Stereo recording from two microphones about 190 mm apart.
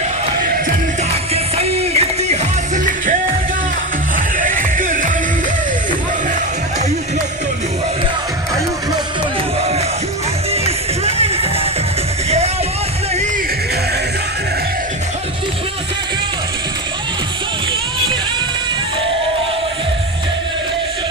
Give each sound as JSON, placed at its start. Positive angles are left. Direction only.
{"t": 1.3, "sound": "music", "side_deg": -30}
{"t": 4.4, "sound": "music", "side_deg": -45}
{"t": 11.0, "sound": "music", "side_deg": -30}